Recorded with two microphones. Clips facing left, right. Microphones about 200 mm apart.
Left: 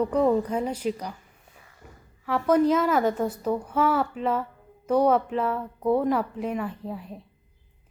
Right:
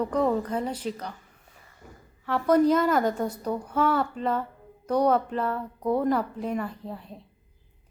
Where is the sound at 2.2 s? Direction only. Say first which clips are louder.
Even; 5° left (ahead or behind).